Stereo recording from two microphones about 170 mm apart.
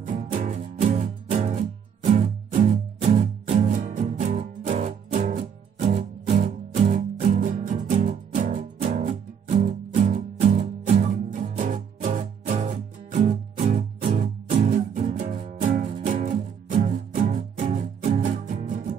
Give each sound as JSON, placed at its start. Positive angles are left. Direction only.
{"t": 0.0, "sound": "music", "side_deg": -50}
{"t": 15.6, "sound": "music", "side_deg": -50}